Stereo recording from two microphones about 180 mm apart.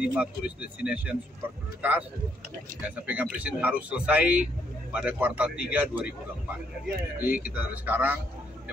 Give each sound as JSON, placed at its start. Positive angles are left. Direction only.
{"t": 0.0, "sound": "speech", "side_deg": -5}
{"t": 3.1, "sound": "speech", "side_deg": -10}